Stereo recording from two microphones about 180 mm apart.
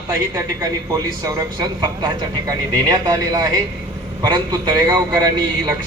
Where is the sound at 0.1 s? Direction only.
15° right (ahead or behind).